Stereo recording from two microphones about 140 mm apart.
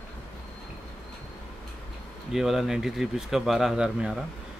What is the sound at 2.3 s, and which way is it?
Speech, centre (ahead or behind).